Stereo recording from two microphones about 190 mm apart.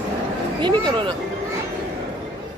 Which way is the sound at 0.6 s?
25° right (ahead or behind).